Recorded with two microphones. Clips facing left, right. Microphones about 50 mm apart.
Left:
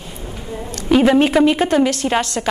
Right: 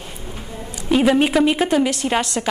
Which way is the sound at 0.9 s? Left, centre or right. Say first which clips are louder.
Left 3 dB; centre.